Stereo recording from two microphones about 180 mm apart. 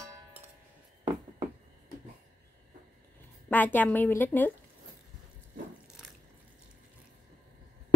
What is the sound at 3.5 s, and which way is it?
A woman's voice, 10° left (ahead or behind).